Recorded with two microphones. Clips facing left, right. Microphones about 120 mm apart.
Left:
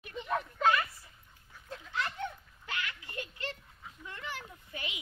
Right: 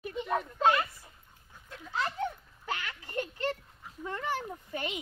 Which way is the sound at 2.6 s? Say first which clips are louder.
Right 3 dB; 40° right (ahead or behind).